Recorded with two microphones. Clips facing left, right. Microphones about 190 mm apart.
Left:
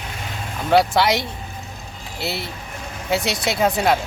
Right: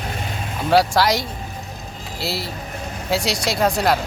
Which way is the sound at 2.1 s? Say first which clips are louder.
Right 1 dB; 60° left (ahead or behind).